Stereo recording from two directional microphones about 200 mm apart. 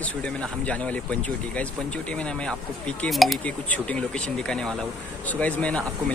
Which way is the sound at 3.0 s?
Centre (ahead or behind).